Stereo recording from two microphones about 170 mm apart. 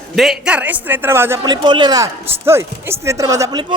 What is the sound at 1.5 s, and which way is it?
A man's voice, 25° right (ahead or behind).